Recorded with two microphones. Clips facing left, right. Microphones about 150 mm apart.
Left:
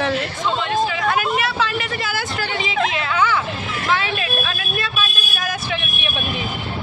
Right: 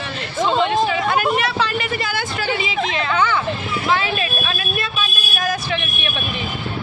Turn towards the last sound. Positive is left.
turn(degrees=0)  # may be behind; listen again after turning